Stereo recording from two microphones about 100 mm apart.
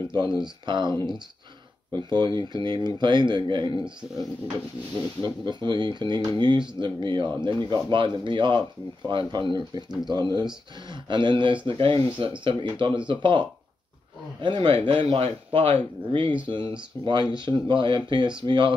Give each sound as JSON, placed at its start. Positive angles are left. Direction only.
{"t": 0.1, "sound": "speech", "side_deg": -50}
{"t": 5.2, "sound": "speech", "side_deg": -50}
{"t": 14.9, "sound": "speech", "side_deg": -70}